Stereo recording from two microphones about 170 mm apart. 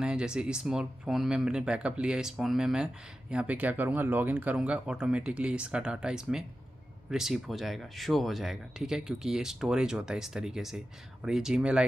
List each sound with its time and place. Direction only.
0.0 s speech: 5° right (ahead or behind)